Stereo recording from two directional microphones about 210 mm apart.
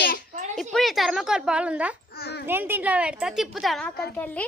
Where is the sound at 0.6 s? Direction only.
Centre (ahead or behind).